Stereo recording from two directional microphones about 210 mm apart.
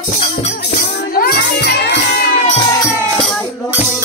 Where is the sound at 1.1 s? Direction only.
45° left (ahead or behind).